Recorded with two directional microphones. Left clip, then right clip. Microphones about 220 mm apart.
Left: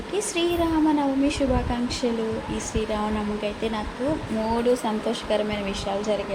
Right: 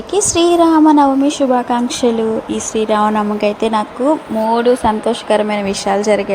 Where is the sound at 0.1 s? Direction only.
30° right (ahead or behind).